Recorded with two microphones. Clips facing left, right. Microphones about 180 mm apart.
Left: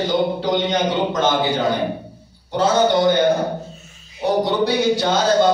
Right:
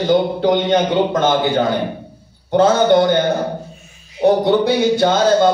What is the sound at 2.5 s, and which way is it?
Speech, 55° right (ahead or behind).